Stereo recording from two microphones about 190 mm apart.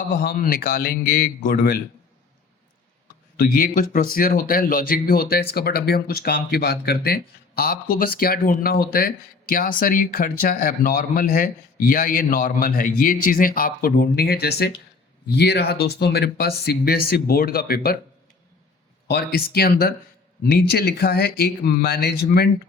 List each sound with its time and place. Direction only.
0.2 s speech: 45° left (ahead or behind)
3.3 s speech: 50° left (ahead or behind)
19.0 s speech: 55° left (ahead or behind)